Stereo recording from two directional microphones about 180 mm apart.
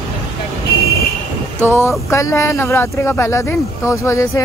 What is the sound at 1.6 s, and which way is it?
Speech, 10° left (ahead or behind).